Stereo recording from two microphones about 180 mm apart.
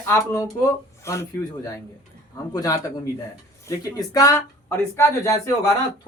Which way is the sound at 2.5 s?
20° left (ahead or behind).